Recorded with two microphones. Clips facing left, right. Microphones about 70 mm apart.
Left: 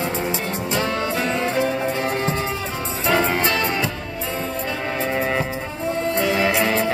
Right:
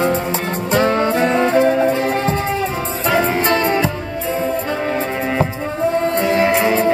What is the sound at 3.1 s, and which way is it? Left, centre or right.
Music, centre.